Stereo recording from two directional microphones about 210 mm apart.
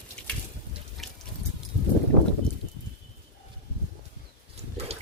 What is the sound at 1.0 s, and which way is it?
Water, centre (ahead or behind).